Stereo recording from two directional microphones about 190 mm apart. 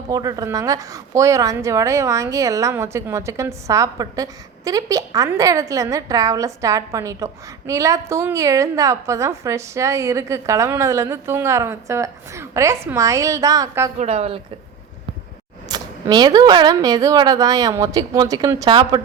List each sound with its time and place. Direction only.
0.1 s a woman's voice: 20° right (ahead or behind)
14.0 s a woman's voice: 35° right (ahead or behind)
15.7 s speech: 20° right (ahead or behind)